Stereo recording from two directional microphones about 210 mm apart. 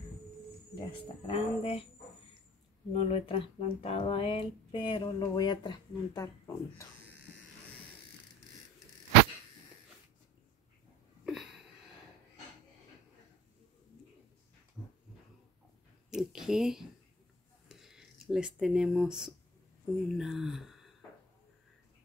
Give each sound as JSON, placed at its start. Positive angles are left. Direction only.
{"t": 0.7, "sound": "speech", "side_deg": 25}
{"t": 2.9, "sound": "speech", "side_deg": 25}
{"t": 11.2, "sound": "wheeze", "side_deg": 0}
{"t": 14.8, "sound": "dog", "side_deg": 5}
{"t": 16.1, "sound": "a sound", "side_deg": 0}
{"t": 20.2, "sound": "speech", "side_deg": 0}